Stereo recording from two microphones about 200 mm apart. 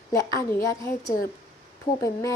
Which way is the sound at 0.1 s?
15° left (ahead or behind).